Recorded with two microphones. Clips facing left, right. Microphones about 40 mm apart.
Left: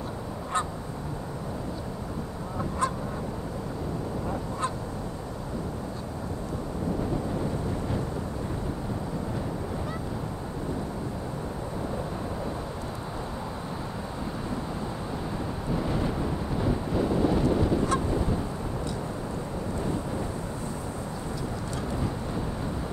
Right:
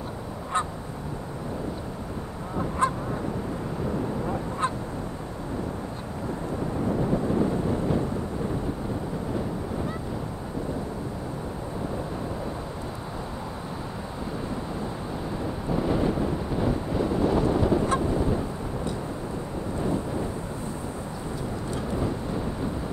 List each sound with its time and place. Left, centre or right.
2.8 s honk: right
4.3 s honk: right
15.7 s wind noise: centre
18.0 s honk: centre
21.9 s vehicle: centre